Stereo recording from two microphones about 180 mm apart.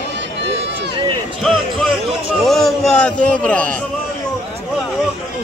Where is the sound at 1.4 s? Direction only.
Centre (ahead or behind).